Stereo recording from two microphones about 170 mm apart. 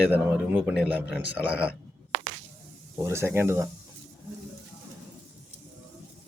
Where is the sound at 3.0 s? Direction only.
15° right (ahead or behind).